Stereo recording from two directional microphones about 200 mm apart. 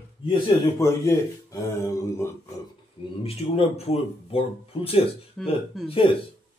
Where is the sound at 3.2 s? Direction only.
30° left (ahead or behind).